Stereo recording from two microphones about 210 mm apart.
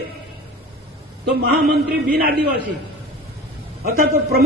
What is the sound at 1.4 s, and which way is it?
Speech, 45° right (ahead or behind).